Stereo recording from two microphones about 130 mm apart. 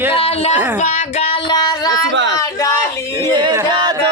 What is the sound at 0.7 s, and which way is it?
Child singing, 65° left (ahead or behind).